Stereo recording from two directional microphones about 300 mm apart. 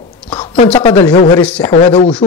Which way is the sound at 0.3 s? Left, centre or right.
Centre.